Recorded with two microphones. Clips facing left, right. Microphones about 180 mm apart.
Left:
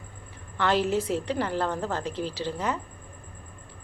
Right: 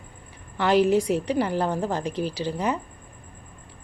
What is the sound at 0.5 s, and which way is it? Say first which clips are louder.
A woman's voice: right 5 dB; 15° right (ahead or behind).